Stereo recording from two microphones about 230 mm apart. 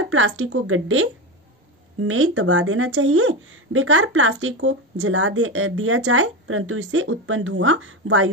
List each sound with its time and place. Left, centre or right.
0.1 s speech: right